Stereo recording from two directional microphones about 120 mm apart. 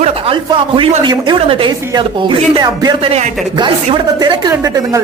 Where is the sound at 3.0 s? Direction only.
55° right (ahead or behind).